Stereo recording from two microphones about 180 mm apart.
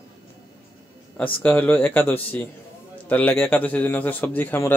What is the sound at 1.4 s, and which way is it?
A man's voice, 10° left (ahead or behind).